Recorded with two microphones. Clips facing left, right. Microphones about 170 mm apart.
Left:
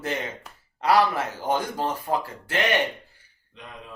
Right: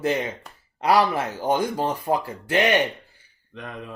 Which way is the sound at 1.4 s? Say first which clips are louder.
Right 3 dB; 15° right (ahead or behind).